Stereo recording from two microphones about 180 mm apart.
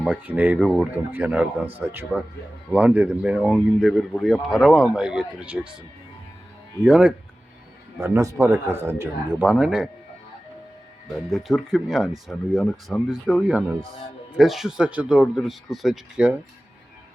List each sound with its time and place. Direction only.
0.0 s speech: 10° right (ahead or behind)
6.8 s speech: 10° right (ahead or behind)
11.1 s speech: centre (ahead or behind)